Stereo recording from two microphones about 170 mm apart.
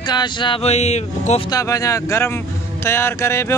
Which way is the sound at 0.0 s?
25° left (ahead or behind).